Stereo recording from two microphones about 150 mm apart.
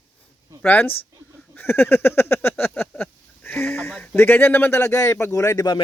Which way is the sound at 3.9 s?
5° left (ahead or behind).